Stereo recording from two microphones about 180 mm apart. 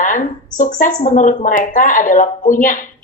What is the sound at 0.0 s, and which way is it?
Speech, 45° left (ahead or behind).